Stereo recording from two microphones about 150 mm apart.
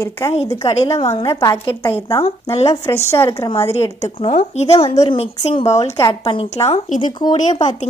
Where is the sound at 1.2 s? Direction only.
20° left (ahead or behind).